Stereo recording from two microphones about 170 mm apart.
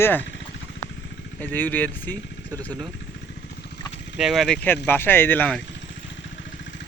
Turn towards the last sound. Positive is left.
turn(degrees=10)  # may be behind; listen again after turning